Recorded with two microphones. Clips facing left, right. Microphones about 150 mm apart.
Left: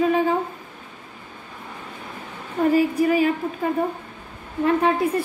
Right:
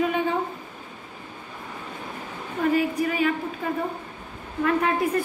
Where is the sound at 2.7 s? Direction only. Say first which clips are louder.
Left 6 dB; 40° left (ahead or behind).